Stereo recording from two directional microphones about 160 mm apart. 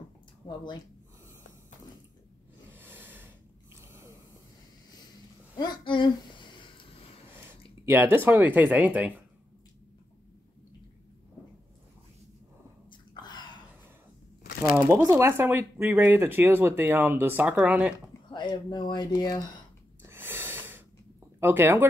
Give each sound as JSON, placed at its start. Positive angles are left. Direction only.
{"t": 0.5, "sound": "speech", "side_deg": 30}
{"t": 2.7, "sound": "snort", "side_deg": -10}
{"t": 5.6, "sound": "a sound", "side_deg": 30}
{"t": 7.8, "sound": "speech", "side_deg": -15}
{"t": 12.9, "sound": "a sound", "side_deg": 25}
{"t": 14.9, "sound": "speech", "side_deg": -20}
{"t": 18.3, "sound": "speech", "side_deg": 30}
{"t": 20.1, "sound": "snort", "side_deg": -15}
{"t": 21.4, "sound": "speech", "side_deg": -15}